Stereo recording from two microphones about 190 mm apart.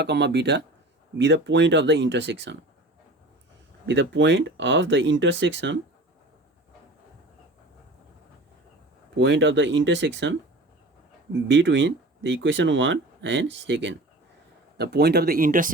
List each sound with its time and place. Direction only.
0.0 s speech: 65° right (ahead or behind)
3.8 s speech: 70° right (ahead or behind)
9.1 s speech: 70° right (ahead or behind)
11.4 s speech: 75° right (ahead or behind)
14.8 s speech: 60° right (ahead or behind)